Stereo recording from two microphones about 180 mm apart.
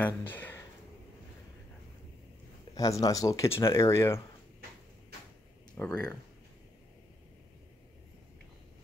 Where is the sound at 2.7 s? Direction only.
20° left (ahead or behind).